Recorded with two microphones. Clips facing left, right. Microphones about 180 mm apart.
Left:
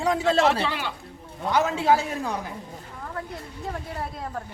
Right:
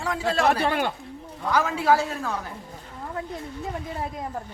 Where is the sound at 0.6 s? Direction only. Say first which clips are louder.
Right 5 dB; 50° right (ahead or behind).